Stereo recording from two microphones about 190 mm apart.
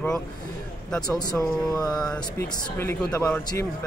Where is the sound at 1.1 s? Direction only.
20° left (ahead or behind).